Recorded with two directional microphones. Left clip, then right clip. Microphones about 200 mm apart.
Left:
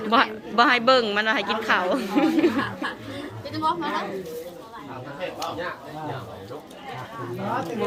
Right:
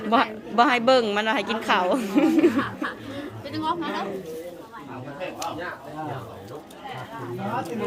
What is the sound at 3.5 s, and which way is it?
Speech, 15° right (ahead or behind).